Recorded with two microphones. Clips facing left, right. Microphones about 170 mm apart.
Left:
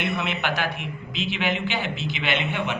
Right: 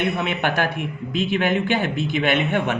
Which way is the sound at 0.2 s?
50° right (ahead or behind).